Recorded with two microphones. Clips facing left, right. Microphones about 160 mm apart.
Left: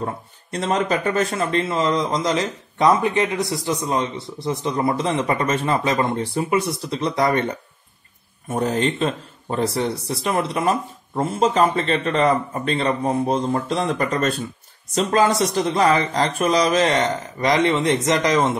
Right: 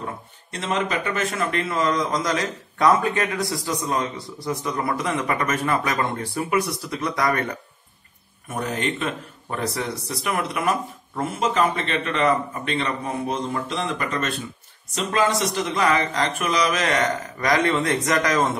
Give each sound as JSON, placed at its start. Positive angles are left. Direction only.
{"t": 0.0, "sound": "a man's voice", "side_deg": 40}